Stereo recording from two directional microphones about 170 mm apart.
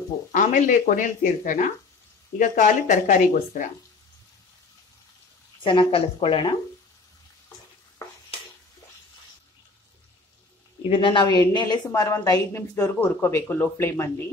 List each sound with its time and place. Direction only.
0.3 s speech: 50° left (ahead or behind)
5.6 s a woman's voice: 30° left (ahead or behind)
10.9 s speech: 30° left (ahead or behind)